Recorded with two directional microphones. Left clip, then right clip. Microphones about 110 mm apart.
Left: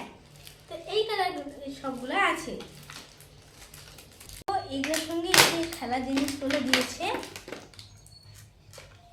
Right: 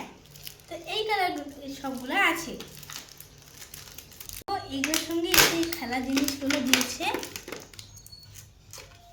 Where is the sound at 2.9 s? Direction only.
35° right (ahead or behind).